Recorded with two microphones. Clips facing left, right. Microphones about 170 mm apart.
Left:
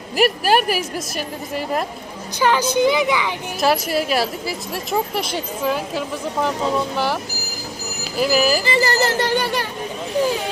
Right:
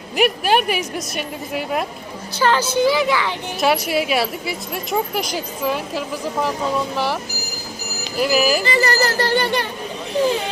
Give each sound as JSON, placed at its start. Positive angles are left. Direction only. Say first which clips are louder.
{"t": 0.2, "sound": "a woman's voice", "louder": "even", "side_deg": 0}
{"t": 2.4, "sound": "speech", "louder": "even", "side_deg": 15}
{"t": 3.6, "sound": "a woman's voice", "louder": "even", "side_deg": 0}
{"t": 8.6, "sound": "speech", "louder": "even", "side_deg": 25}
{"t": 9.4, "sound": "a woman's voice", "louder": "right 2 dB", "side_deg": 5}